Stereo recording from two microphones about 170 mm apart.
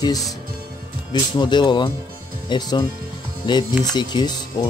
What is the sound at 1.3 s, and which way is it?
Speech, 25° left (ahead or behind).